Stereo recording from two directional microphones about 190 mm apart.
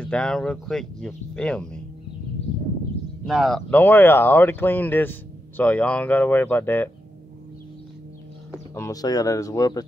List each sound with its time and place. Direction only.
0.0 s speech: 5° left (ahead or behind)
3.3 s speech: centre (ahead or behind)
8.7 s speech: 15° left (ahead or behind)